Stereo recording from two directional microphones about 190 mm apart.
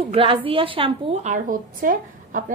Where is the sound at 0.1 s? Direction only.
30° right (ahead or behind).